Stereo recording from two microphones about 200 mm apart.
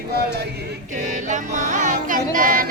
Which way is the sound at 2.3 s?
45° right (ahead or behind).